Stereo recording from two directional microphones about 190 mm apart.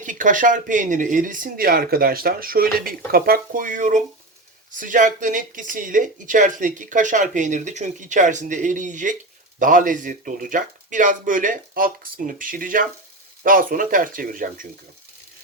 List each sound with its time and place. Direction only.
0.0 s speech: 45° right (ahead or behind)